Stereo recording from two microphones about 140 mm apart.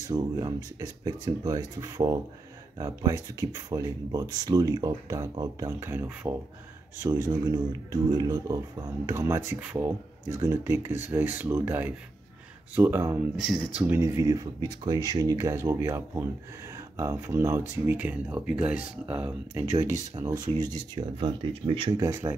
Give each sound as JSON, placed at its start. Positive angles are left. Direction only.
{"t": 0.1, "sound": "speech", "side_deg": -30}
{"t": 13.4, "sound": "speech", "side_deg": -5}
{"t": 13.7, "sound": "speech", "side_deg": -15}
{"t": 20.2, "sound": "speech", "side_deg": -30}
{"t": 22.0, "sound": "speech", "side_deg": -20}